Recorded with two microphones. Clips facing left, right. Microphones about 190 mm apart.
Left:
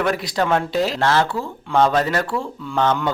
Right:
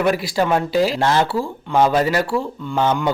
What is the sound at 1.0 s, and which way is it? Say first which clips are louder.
Speech: right 1 dB; 15° right (ahead or behind).